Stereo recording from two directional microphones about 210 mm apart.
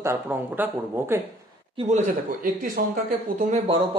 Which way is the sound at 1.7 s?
30° right (ahead or behind).